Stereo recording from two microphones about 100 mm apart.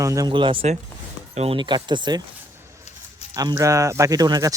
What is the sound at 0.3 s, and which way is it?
Speech, 55° right (ahead or behind).